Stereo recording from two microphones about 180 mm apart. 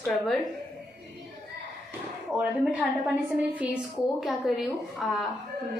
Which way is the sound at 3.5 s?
5° right (ahead or behind).